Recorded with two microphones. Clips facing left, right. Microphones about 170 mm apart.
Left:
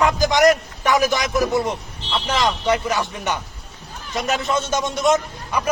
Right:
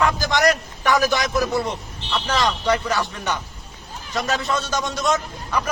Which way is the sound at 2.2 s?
20° left (ahead or behind).